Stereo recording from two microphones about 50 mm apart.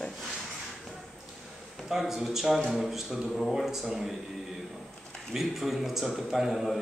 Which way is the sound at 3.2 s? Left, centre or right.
Centre.